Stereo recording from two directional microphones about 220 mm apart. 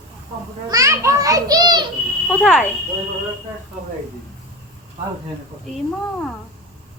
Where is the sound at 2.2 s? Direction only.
5° left (ahead or behind).